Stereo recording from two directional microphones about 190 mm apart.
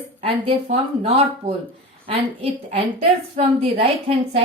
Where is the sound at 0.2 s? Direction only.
30° right (ahead or behind).